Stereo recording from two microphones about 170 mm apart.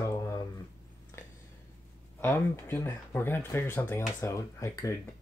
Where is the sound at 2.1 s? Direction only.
15° left (ahead or behind).